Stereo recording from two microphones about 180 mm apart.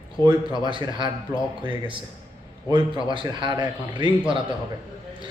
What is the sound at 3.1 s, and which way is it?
Speech, 25° right (ahead or behind).